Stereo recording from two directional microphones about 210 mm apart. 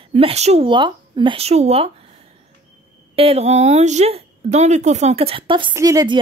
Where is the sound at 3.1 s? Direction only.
30° right (ahead or behind).